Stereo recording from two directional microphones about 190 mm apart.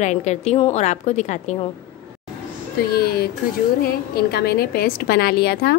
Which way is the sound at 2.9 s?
55° left (ahead or behind).